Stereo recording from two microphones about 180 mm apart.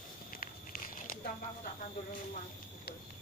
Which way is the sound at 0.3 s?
50° left (ahead or behind).